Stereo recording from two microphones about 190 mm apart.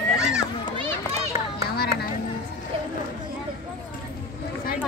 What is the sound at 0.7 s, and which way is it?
Run, 35° right (ahead or behind).